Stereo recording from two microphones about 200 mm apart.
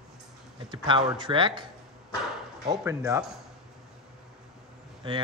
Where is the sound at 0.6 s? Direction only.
25° right (ahead or behind).